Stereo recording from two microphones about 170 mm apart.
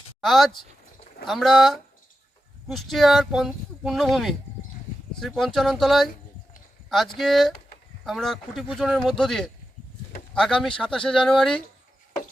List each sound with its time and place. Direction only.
0.2 s speech: centre (ahead or behind)
7.2 s speech: centre (ahead or behind)